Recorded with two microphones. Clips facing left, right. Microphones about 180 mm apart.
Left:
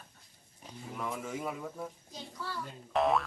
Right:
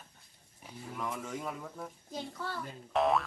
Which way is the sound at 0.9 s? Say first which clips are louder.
Left 1 dB; 5° left (ahead or behind).